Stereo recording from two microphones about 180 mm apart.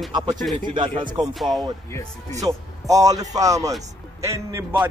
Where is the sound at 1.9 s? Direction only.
15° left (ahead or behind).